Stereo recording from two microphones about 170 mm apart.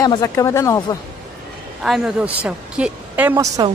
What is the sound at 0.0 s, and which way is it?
Speech, 20° left (ahead or behind).